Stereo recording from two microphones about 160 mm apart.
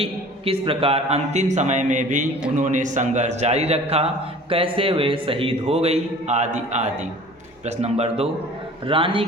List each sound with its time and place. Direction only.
0.0 s a man's voice: 35° right (ahead or behind)